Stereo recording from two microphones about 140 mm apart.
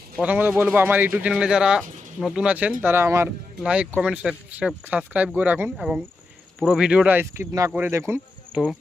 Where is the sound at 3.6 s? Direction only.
5° right (ahead or behind); by 7.7 s 20° right (ahead or behind).